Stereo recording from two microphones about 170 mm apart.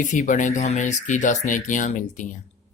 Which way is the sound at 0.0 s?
50° left (ahead or behind).